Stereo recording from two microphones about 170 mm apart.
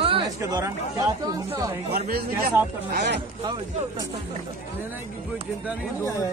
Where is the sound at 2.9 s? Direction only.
85° right.